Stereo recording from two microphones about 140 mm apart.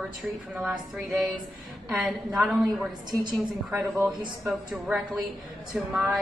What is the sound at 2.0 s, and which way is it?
Speech, centre (ahead or behind).